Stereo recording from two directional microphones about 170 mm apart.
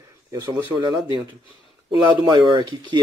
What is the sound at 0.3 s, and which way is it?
Speech, 25° right (ahead or behind).